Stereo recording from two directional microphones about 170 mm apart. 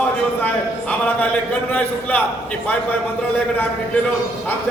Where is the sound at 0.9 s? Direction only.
10° left (ahead or behind).